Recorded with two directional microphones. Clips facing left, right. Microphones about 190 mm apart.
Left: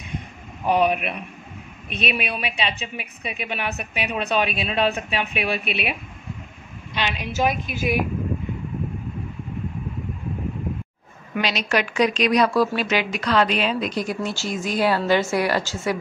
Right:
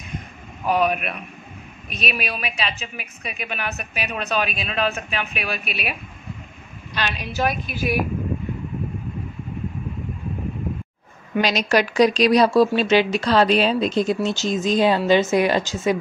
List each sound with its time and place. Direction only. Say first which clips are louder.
0.7 s speech: left 1 dB; 25° left (ahead or behind)
7.0 s speech: left 1 dB; 20° left (ahead or behind)
11.4 s speech: right 4 dB; 40° right (ahead or behind); by 16.0 s 20° right (ahead or behind)